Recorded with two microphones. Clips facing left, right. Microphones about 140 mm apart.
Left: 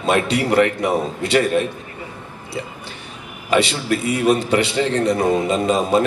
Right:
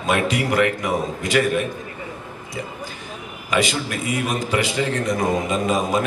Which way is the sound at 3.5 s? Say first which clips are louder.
Left 4 dB; 30° left (ahead or behind).